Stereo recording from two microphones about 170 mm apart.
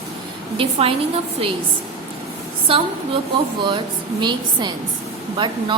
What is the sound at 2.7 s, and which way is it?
Speech, 35° right (ahead or behind).